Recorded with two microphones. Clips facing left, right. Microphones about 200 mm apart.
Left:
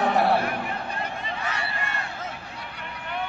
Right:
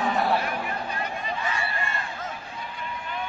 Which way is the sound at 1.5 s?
70° left (ahead or behind).